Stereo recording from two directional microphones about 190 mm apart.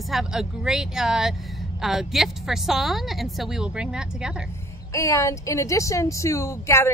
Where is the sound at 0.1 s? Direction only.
5° right (ahead or behind).